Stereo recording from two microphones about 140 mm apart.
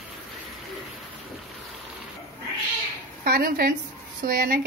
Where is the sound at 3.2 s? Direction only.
90° right.